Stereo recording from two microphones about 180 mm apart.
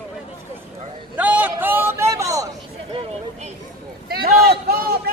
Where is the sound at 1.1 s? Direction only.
10° right (ahead or behind).